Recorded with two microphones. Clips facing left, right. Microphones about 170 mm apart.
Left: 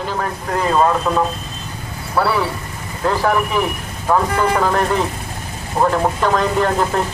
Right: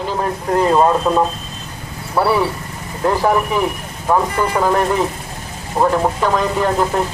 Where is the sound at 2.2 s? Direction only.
15° right (ahead or behind).